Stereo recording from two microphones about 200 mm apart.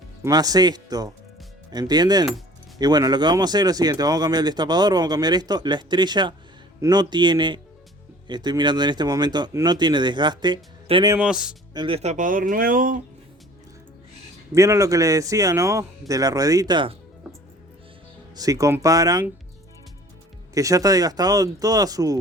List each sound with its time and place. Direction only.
0.2 s speech: 20° right (ahead or behind)
11.1 s speech: 5° right (ahead or behind)
11.7 s speech: 25° right (ahead or behind); by 13.0 s 45° right (ahead or behind)
14.5 s a man's voice: 15° right (ahead or behind)
18.3 s a man's voice: 15° right (ahead or behind)
20.5 s a man's voice: 15° right (ahead or behind)